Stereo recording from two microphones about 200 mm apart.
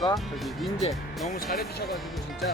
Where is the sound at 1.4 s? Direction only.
50° left (ahead or behind).